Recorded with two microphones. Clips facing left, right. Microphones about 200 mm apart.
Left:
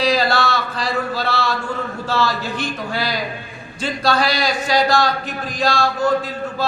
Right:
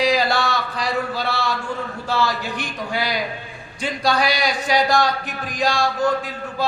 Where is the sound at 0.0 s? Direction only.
15° right (ahead or behind).